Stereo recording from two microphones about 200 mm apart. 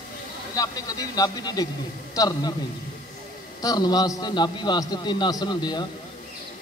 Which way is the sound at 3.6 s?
20° left (ahead or behind).